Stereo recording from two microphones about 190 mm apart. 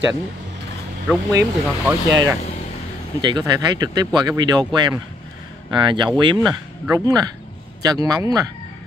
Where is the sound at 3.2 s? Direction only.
20° right (ahead or behind).